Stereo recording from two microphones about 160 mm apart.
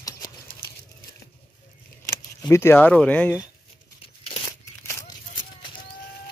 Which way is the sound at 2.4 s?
15° left (ahead or behind).